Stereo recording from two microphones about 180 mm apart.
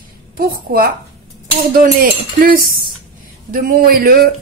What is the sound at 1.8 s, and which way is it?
Cutlery, 55° right (ahead or behind).